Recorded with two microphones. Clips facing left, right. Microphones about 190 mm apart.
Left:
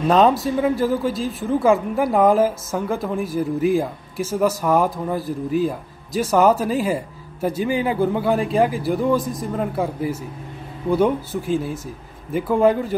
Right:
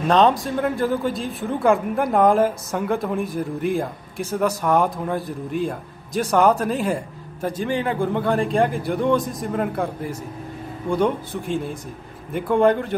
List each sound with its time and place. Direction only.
0.1 s speech: 5° left (ahead or behind)